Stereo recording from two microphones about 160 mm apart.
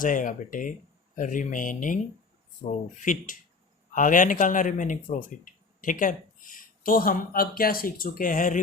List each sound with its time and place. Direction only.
0.0 s speech: 55° left (ahead or behind)